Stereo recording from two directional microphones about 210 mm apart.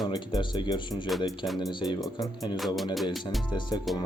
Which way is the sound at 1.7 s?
20° left (ahead or behind).